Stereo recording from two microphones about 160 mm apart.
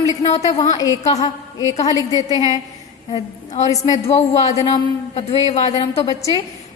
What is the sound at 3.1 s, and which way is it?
A woman's voice, 45° left (ahead or behind).